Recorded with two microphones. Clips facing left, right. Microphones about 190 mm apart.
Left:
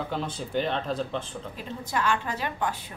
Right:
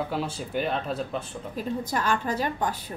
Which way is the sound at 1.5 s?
40° right (ahead or behind).